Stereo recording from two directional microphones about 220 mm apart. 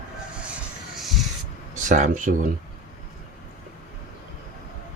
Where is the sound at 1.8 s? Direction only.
35° right (ahead or behind).